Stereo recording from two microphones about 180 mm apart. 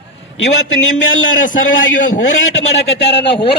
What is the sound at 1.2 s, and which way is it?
Speech, 45° left (ahead or behind).